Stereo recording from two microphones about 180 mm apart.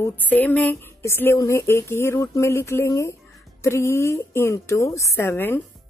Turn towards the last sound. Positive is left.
turn(degrees=15)  # may be behind; listen again after turning